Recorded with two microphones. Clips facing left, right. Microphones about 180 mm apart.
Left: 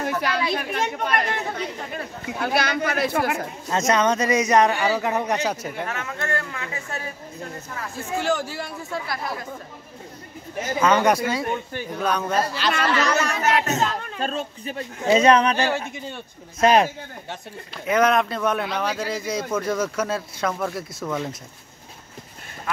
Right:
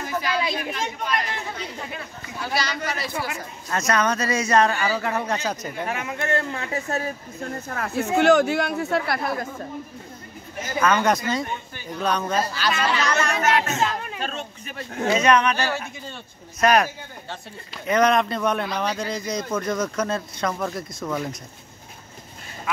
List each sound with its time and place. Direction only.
0.0 s chatter: 65° left (ahead or behind)
0.5 s speech: 60° left (ahead or behind)
3.7 s speech: 20° left (ahead or behind)
5.9 s speech: 15° right (ahead or behind)
6.5 s speech: 35° right (ahead or behind)
7.7 s speech: 70° right (ahead or behind)
10.8 s speech: 20° left (ahead or behind)
12.0 s speech: 5° left (ahead or behind)
13.4 s speech: 40° left (ahead or behind)
15.5 s speech: 20° left (ahead or behind)
17.8 s speech: 5° left (ahead or behind)